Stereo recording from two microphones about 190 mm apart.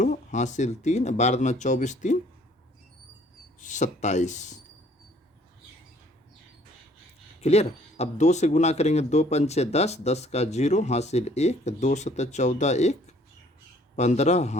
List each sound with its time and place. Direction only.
0.0 s speech: 40° left (ahead or behind)
3.6 s speech: 40° left (ahead or behind)
7.4 s speech: 35° left (ahead or behind)